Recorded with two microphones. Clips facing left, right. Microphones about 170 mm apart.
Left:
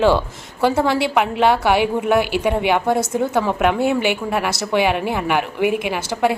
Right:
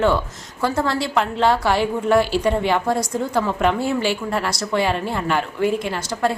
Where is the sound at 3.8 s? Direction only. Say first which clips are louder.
Left 3 dB; 65° left (ahead or behind).